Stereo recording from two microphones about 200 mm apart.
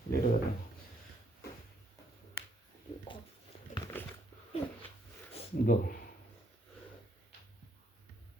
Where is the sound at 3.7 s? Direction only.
40° left (ahead or behind).